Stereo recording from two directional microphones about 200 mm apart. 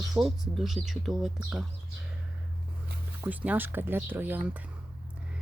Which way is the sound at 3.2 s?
10° right (ahead or behind).